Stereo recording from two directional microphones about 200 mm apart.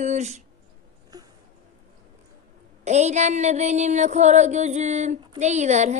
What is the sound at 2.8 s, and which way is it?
Speech, 35° right (ahead or behind).